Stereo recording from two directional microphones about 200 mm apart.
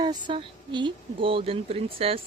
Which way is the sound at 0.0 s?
20° right (ahead or behind).